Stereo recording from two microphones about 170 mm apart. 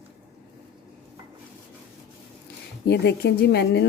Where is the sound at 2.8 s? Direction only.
85° left.